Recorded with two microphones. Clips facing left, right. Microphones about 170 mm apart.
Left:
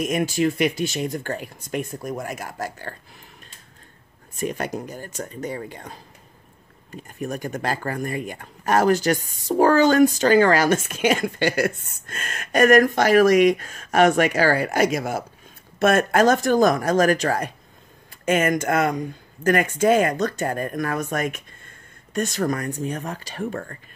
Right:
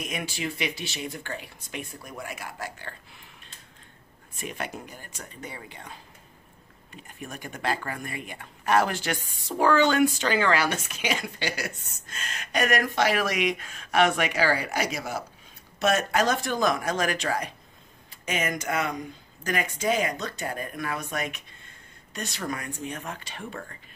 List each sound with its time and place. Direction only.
0.0 s speech: 45° left (ahead or behind)
4.4 s speech: 40° left (ahead or behind)